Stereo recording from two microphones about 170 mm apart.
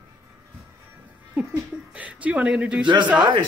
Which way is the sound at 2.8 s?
25° right (ahead or behind).